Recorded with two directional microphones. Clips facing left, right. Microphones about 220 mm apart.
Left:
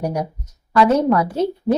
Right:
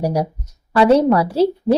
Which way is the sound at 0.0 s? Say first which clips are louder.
Right 3 dB; 35° right (ahead or behind).